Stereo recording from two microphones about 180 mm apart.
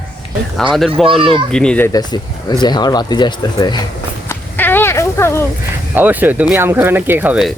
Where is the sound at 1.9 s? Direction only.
20° left (ahead or behind).